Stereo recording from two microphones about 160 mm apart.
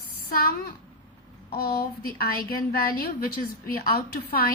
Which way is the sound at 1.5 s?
70° left (ahead or behind).